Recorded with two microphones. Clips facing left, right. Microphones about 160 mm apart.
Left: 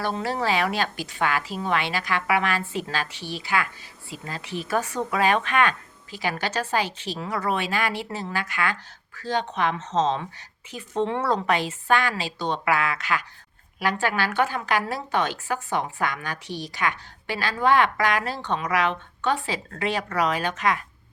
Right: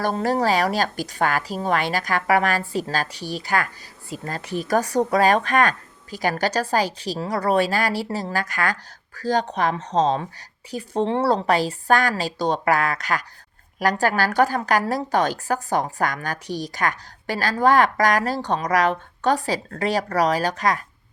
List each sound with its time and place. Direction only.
0.0 s a woman's voice: 45° right (ahead or behind)